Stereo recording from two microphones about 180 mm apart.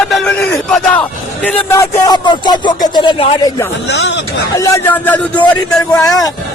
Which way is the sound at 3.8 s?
85° left.